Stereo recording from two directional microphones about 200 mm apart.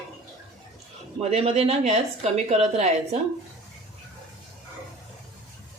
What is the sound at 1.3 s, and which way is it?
A woman's voice, 30° right (ahead or behind).